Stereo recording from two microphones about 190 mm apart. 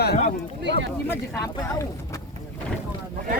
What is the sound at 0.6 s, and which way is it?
Speech, 65° right (ahead or behind).